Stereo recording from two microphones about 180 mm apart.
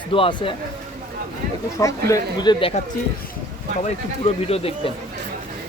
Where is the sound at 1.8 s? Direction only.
15° left (ahead or behind).